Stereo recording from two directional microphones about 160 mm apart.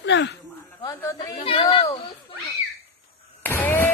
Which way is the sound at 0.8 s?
20° left (ahead or behind).